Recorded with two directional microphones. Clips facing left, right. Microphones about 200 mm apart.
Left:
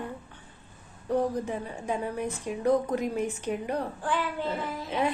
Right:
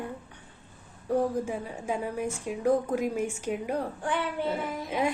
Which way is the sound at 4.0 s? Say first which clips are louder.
Even; 20° right (ahead or behind).